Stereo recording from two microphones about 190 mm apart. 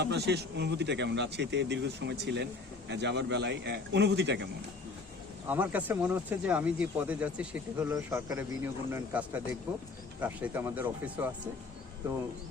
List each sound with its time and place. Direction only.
0.0 s speech: 60° right (ahead or behind)
5.5 s speech: 10° right (ahead or behind)